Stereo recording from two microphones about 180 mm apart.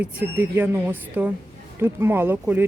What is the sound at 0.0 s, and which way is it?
Speech, 10° right (ahead or behind).